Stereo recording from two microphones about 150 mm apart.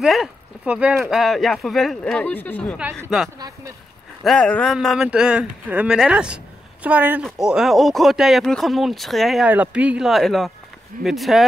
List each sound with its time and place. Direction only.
0.0 s speech: centre (ahead or behind)
3.3 s speech: 25° right (ahead or behind)
4.2 s speech: 5° left (ahead or behind)